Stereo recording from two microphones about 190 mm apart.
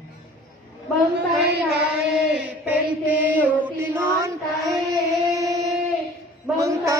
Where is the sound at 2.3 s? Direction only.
10° right (ahead or behind).